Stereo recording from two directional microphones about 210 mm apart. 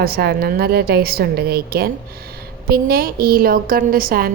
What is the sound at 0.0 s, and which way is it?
A woman's voice, 50° right (ahead or behind).